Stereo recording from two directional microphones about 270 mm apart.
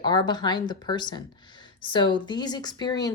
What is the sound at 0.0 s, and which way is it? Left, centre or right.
A woman's voice, centre.